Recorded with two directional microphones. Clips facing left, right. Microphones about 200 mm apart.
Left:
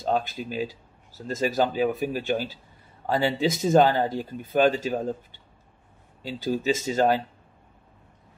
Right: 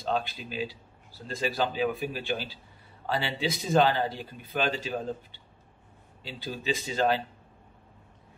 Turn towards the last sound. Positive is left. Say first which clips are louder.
# left 4 dB
turn(degrees=45)  # may be behind; listen again after turning